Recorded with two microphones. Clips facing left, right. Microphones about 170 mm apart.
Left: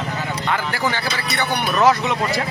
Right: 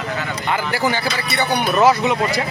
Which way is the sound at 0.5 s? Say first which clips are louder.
Right 4 dB; 10° right (ahead or behind).